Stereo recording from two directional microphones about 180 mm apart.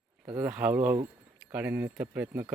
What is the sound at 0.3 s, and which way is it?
Speech, 10° right (ahead or behind).